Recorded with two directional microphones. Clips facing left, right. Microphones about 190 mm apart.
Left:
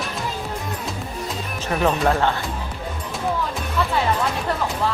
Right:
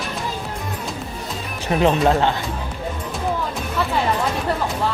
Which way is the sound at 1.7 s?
20° right (ahead or behind).